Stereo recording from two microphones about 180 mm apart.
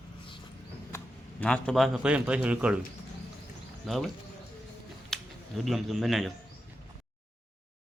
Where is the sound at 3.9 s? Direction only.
Centre (ahead or behind).